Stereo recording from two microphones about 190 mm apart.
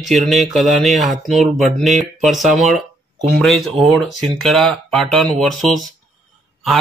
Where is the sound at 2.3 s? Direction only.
40° right (ahead or behind).